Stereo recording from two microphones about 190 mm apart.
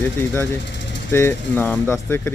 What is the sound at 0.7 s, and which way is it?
Vehicle, 70° left (ahead or behind).